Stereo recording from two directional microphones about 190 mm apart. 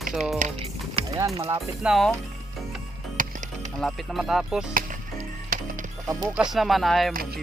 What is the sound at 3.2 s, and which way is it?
Music, 40° right (ahead or behind).